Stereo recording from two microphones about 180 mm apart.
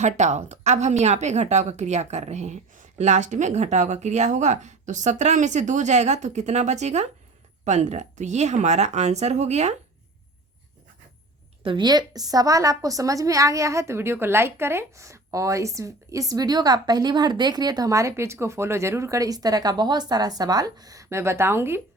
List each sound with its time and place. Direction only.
0.0 s a woman's voice: 40° right (ahead or behind)
11.6 s a woman's voice: 25° right (ahead or behind)